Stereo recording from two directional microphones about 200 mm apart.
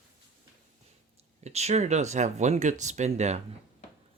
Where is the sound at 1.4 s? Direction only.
35° right (ahead or behind).